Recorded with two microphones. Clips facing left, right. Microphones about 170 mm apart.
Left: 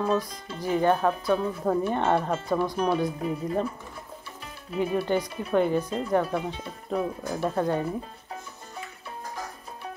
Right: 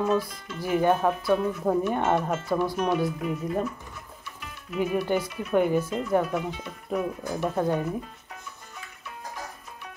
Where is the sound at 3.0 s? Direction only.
30° left (ahead or behind).